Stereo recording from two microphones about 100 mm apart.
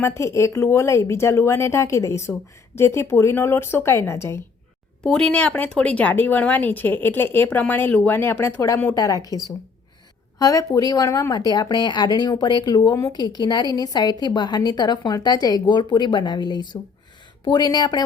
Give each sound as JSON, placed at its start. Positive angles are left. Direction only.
{"t": 0.0, "sound": "speech", "side_deg": 25}
{"t": 5.0, "sound": "a woman's voice", "side_deg": 10}